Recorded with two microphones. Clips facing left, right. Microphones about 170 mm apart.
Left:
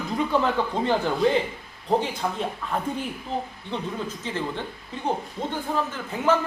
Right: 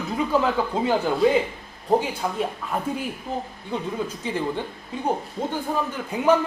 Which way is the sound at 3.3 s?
50° right (ahead or behind).